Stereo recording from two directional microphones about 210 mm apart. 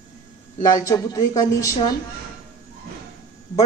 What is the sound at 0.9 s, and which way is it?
A woman's voice, 15° left (ahead or behind).